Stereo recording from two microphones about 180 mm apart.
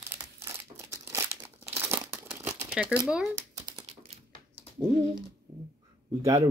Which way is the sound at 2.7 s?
5° right (ahead or behind).